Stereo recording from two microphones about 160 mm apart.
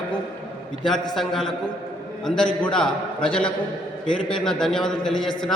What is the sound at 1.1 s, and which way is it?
A man's voice, centre (ahead or behind).